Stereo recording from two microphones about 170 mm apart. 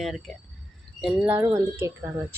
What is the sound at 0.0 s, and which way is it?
Speech, centre (ahead or behind).